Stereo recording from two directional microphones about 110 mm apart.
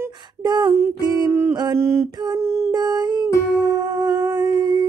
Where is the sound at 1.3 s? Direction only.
25° right (ahead or behind).